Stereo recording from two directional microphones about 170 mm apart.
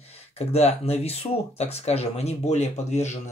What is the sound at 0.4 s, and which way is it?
Speech, 40° left (ahead or behind).